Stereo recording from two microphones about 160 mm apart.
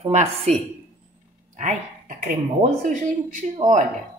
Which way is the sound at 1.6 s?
50° right (ahead or behind).